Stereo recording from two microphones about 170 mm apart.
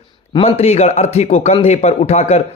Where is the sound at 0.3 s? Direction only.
35° left (ahead or behind).